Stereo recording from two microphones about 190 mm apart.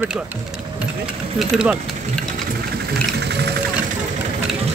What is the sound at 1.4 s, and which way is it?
Speech, 5° right (ahead or behind).